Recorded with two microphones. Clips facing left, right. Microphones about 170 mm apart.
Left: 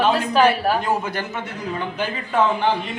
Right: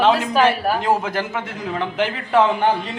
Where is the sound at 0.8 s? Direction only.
90° right.